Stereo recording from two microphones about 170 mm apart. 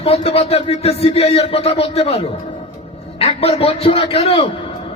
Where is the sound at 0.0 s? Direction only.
35° left (ahead or behind).